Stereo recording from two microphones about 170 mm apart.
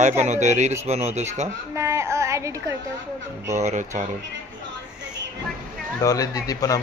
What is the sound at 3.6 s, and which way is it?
Speech, 45° right (ahead or behind).